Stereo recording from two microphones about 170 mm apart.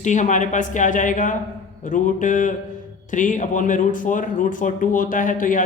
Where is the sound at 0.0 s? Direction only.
45° left (ahead or behind).